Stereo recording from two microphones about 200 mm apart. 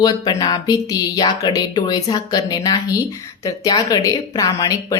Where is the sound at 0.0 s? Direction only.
20° left (ahead or behind).